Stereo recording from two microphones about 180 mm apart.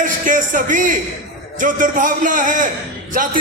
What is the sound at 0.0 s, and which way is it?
A man's voice, 45° right (ahead or behind).